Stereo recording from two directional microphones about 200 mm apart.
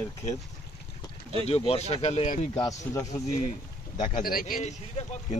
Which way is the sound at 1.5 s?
30° left (ahead or behind).